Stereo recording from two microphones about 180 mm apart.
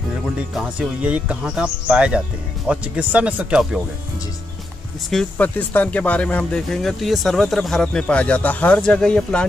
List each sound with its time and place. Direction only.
0.6 s speech: 5° right (ahead or behind)
5.1 s speech: 10° left (ahead or behind)